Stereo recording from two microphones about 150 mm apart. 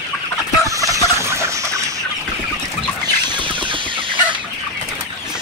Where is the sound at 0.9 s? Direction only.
20° right (ahead or behind).